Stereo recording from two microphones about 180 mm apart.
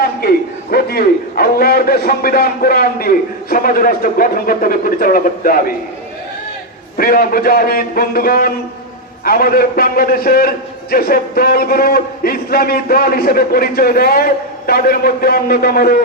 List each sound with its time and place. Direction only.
0.0 s a man's voice: 55° left (ahead or behind)
6.9 s speech: 55° left (ahead or behind)